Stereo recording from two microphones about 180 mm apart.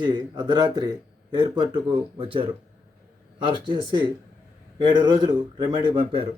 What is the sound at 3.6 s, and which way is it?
Speech, 25° right (ahead or behind).